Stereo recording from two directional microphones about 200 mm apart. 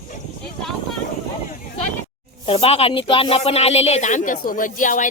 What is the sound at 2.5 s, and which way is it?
A woman's voice, 30° left (ahead or behind).